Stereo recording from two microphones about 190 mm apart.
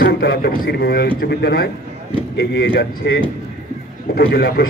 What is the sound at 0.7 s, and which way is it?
A man's voice, 60° left (ahead or behind).